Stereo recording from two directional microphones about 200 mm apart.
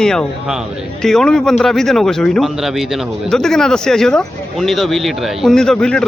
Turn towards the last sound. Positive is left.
turn(degrees=5)  # may be behind; listen again after turning